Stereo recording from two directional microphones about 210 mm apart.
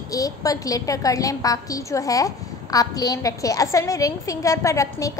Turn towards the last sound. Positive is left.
turn(degrees=15)  # may be behind; listen again after turning